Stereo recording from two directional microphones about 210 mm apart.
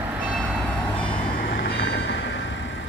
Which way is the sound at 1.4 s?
45° left (ahead or behind).